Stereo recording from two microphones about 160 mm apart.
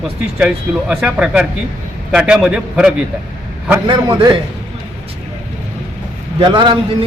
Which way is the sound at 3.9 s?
30° right (ahead or behind).